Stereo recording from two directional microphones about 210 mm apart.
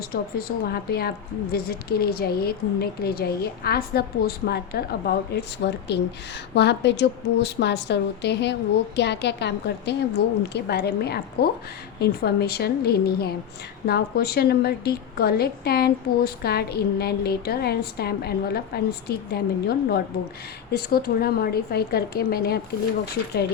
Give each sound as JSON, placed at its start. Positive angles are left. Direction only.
{"t": 0.1, "sound": "a woman's voice", "side_deg": 45}